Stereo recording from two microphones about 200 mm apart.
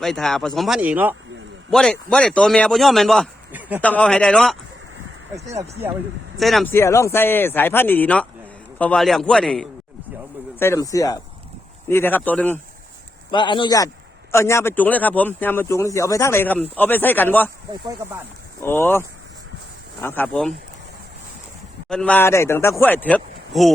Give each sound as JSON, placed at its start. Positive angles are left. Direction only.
{"t": 0.0, "sound": "a man's voice", "side_deg": 0}
{"t": 1.7, "sound": "a man's voice", "side_deg": 5}
{"t": 3.8, "sound": "a man's voice", "side_deg": 5}
{"t": 5.5, "sound": "speech", "side_deg": -15}
{"t": 6.3, "sound": "a man's voice", "side_deg": 0}
{"t": 6.7, "sound": "a man's voice", "side_deg": 15}
{"t": 10.6, "sound": "speech", "side_deg": 15}
{"t": 13.3, "sound": "speech", "side_deg": 25}
{"t": 17.8, "sound": "speech", "side_deg": -10}
{"t": 18.6, "sound": "speech", "side_deg": 10}
{"t": 21.8, "sound": "speech", "side_deg": 5}